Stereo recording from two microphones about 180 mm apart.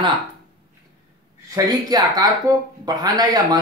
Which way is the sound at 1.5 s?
20° right (ahead or behind).